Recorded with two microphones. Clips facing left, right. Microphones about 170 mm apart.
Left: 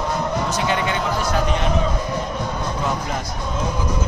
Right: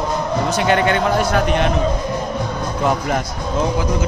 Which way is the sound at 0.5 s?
65° right (ahead or behind).